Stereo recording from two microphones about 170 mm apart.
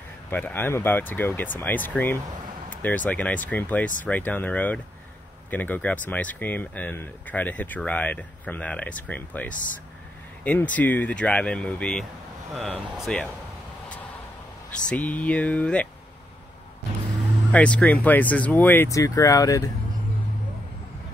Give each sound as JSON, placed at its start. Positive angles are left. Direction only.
{"t": 0.3, "sound": "speech", "side_deg": 10}
{"t": 14.7, "sound": "speech", "side_deg": 5}
{"t": 17.5, "sound": "speech", "side_deg": 5}